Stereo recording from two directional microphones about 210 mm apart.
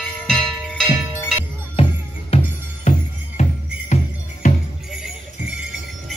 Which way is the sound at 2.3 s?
30° left (ahead or behind).